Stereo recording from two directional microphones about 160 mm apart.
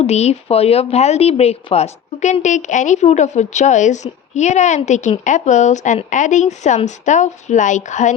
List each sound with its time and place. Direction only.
0.0 s speech: 40° left (ahead or behind)